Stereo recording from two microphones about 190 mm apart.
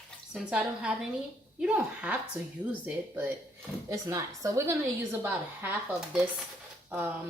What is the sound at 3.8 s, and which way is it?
A woman's voice, 15° right (ahead or behind).